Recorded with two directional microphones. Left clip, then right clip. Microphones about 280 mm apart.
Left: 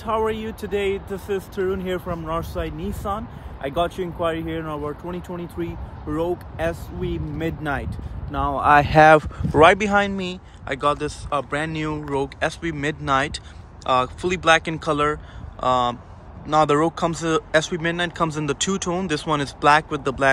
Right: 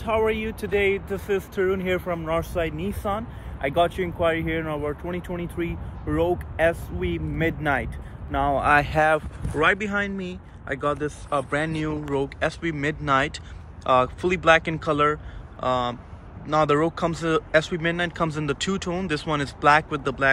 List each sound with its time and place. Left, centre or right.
0.0 s speech: centre
8.8 s speech: left
9.6 s speech: centre